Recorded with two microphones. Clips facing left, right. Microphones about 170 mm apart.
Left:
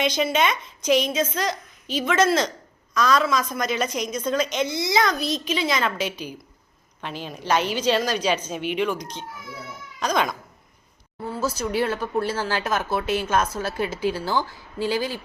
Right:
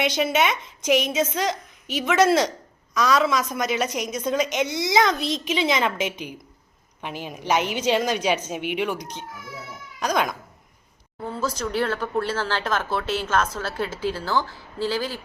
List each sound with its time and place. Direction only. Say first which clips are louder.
0.0 s a woman's voice: even; 15° right (ahead or behind)
10.0 s a woman's voice: even; 10° right (ahead or behind)
11.3 s speech: left 1 dB; 10° left (ahead or behind)